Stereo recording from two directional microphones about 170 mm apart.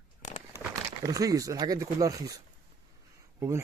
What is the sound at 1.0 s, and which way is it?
Speech, 20° right (ahead or behind).